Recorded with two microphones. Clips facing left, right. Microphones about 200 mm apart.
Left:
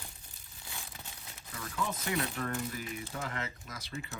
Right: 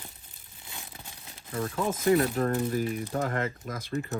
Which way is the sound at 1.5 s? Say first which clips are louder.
Right 8 dB; 50° right (ahead or behind).